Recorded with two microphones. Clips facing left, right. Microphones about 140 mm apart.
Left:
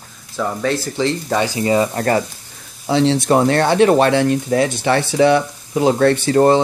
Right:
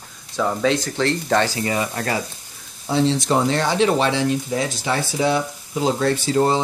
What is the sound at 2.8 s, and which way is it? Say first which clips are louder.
Speech: left 4 dB; 85° left.